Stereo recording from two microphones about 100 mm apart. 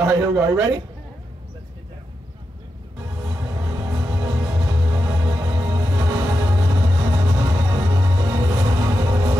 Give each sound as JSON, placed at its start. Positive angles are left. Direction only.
{"t": 0.4, "sound": "a man's voice", "side_deg": -30}
{"t": 3.5, "sound": "music", "side_deg": -35}